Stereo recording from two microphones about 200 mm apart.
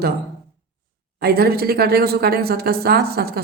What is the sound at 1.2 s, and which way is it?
A woman's voice, 50° right (ahead or behind).